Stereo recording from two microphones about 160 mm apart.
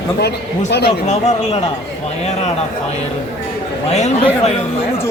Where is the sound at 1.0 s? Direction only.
45° left (ahead or behind).